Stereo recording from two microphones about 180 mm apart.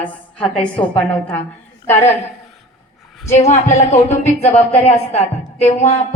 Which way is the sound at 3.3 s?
40° left (ahead or behind).